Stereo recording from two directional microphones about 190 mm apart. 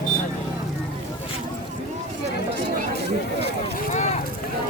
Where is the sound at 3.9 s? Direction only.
35° left (ahead or behind).